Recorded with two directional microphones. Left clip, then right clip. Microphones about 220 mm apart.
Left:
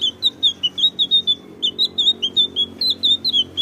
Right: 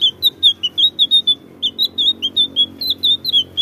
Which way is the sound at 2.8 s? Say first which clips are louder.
Right 1 dB; 20° right (ahead or behind).